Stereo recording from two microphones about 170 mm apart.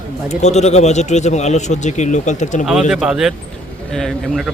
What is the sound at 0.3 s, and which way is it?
A man's voice, 40° left (ahead or behind).